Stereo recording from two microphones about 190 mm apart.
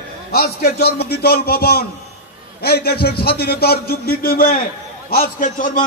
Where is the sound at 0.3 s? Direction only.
55° left (ahead or behind).